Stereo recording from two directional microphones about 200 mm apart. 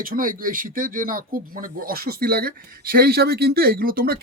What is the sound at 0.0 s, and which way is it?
Speech, 45° right (ahead or behind).